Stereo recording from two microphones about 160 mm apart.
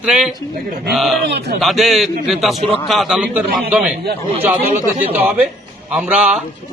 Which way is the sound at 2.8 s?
Centre (ahead or behind).